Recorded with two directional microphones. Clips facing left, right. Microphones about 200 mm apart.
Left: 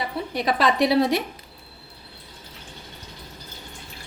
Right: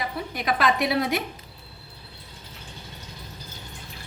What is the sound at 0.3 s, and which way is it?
Speech, 35° left (ahead or behind).